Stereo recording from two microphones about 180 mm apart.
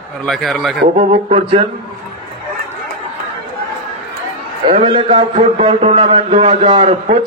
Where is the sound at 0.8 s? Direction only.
45° right (ahead or behind).